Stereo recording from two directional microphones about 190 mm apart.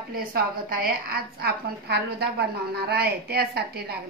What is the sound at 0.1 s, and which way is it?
A woman's voice, 50° right (ahead or behind).